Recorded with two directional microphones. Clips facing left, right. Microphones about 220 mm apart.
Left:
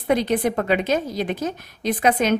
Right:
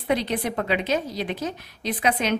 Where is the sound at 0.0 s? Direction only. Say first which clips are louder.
Left 5 dB; 45° left (ahead or behind).